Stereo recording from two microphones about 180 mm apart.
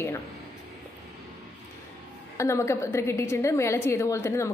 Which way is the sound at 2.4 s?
15° left (ahead or behind).